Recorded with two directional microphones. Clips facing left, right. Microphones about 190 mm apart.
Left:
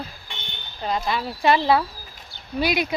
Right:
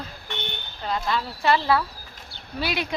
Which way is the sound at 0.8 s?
15° left (ahead or behind).